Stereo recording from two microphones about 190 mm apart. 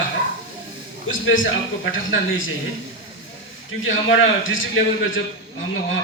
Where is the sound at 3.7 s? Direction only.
90° left.